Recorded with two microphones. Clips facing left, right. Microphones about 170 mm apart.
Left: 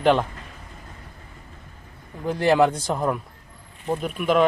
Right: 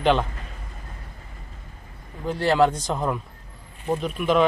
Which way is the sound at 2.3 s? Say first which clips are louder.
Left 1 dB; 15° left (ahead or behind).